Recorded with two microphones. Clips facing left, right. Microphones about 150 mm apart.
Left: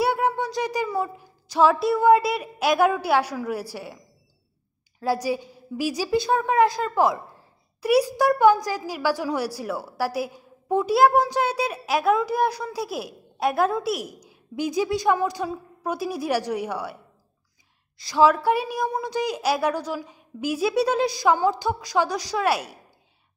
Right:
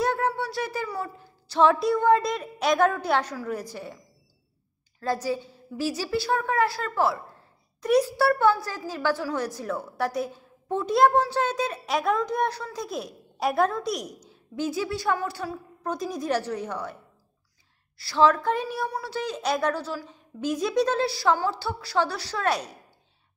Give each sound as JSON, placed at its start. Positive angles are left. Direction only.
{"t": 0.0, "sound": "a sound", "side_deg": 15}
{"t": 1.7, "sound": "a woman's voice", "side_deg": 5}
{"t": 5.0, "sound": "a woman's voice", "side_deg": 10}